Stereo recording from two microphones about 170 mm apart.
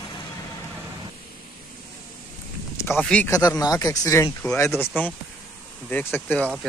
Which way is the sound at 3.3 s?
20° left (ahead or behind).